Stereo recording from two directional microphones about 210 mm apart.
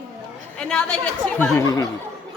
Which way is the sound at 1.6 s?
15° left (ahead or behind).